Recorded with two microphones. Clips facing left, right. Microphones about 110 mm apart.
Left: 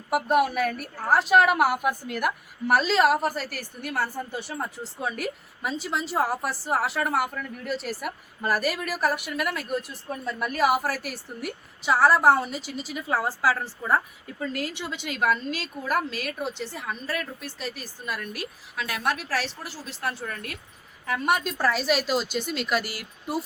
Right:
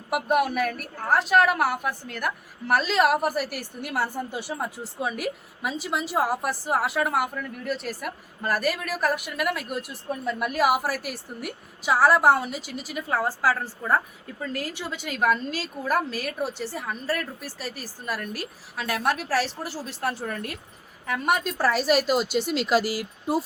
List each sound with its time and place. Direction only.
0.1 s a woman's voice: centre (ahead or behind)
17.1 s a woman's voice: 20° left (ahead or behind)
17.7 s speech: 15° right (ahead or behind)
18.8 s speech: 25° right (ahead or behind)
19.0 s speech: 15° right (ahead or behind)
20.1 s speech: 25° right (ahead or behind)
21.1 s a woman's voice: centre (ahead or behind)
21.8 s a woman's voice: 45° right (ahead or behind)
22.0 s speech: 10° right (ahead or behind)
22.3 s speech: 75° right (ahead or behind)
22.5 s speech: 25° right (ahead or behind)